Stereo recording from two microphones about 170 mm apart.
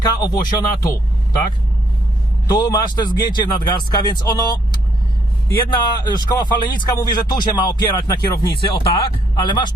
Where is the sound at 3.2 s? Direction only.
25° left (ahead or behind).